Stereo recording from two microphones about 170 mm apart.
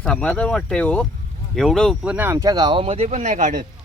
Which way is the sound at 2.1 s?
15° right (ahead or behind).